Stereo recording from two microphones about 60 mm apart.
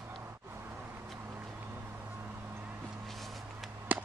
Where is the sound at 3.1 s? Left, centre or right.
Centre.